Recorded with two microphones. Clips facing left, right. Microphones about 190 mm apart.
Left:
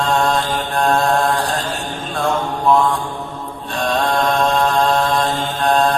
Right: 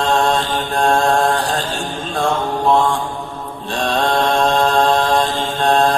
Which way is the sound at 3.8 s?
30° right (ahead or behind).